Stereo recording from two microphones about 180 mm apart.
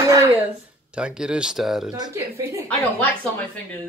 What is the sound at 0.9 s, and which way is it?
Speech, 5° right (ahead or behind).